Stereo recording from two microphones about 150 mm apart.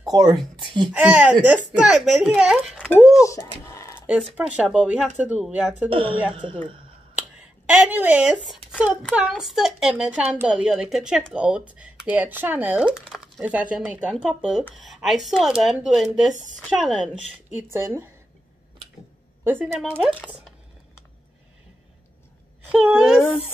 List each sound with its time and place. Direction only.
0.0 s speech: 25° right (ahead or behind)
0.9 s speech: 10° right (ahead or behind)
3.1 s speech: 20° left (ahead or behind)
3.9 s speech: 10° right (ahead or behind)
5.9 s speech: 35° right (ahead or behind)
7.2 s speech: 10° right (ahead or behind)
17.7 s speech: 15° right (ahead or behind)
19.4 s speech: 15° right (ahead or behind)
19.8 s speech: centre (ahead or behind)
22.7 s speech: 5° right (ahead or behind)